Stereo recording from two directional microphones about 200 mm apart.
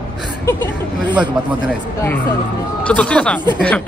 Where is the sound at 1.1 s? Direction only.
5° right (ahead or behind).